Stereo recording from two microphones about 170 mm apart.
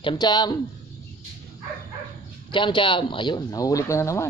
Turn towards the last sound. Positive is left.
turn(degrees=15)  # may be behind; listen again after turning